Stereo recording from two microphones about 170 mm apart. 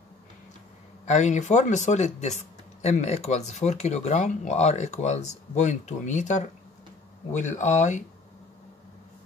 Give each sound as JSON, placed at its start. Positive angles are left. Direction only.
{"t": 1.0, "sound": "speech", "side_deg": 45}